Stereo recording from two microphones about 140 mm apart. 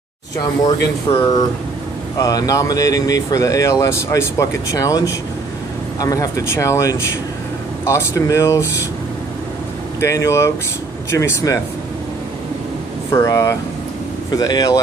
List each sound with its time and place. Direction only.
0.4 s speech: 30° left (ahead or behind)
9.9 s speech: 20° left (ahead or behind)
13.1 s speech: 25° left (ahead or behind)